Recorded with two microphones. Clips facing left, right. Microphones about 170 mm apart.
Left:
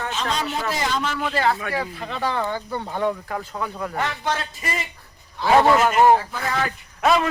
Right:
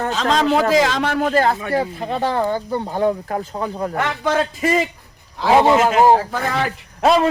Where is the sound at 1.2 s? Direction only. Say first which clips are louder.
Right 6 dB; 45° right (ahead or behind).